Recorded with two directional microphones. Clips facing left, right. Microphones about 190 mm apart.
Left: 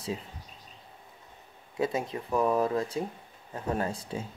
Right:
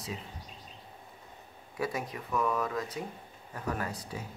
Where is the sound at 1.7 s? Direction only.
25° left (ahead or behind).